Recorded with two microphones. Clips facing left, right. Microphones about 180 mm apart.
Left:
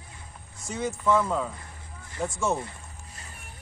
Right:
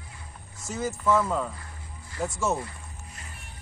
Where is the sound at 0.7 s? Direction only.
Centre (ahead or behind).